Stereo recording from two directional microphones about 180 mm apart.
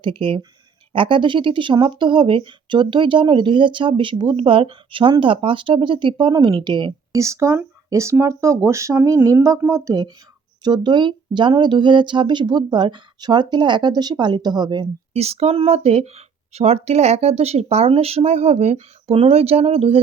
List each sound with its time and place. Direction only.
0.0 s speech: 30° right (ahead or behind)
15.1 s speech: 35° right (ahead or behind)